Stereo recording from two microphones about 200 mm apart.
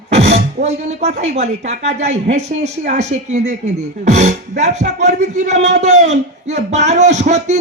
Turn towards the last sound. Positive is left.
turn(degrees=-35)  # may be behind; listen again after turning